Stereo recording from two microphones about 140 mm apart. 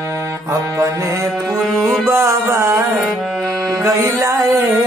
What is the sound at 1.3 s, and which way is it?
Music, centre (ahead or behind).